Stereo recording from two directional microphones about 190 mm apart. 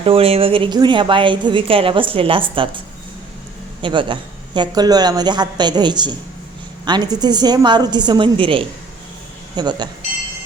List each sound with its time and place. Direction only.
0.0 s a woman's voice: 30° right (ahead or behind)